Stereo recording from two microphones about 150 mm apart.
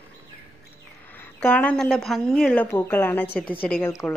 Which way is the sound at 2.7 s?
15° left (ahead or behind).